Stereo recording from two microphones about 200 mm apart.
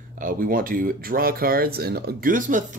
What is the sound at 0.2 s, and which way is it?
Speech, 45° right (ahead or behind).